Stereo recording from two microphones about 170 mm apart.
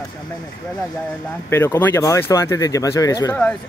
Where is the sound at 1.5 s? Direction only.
15° left (ahead or behind).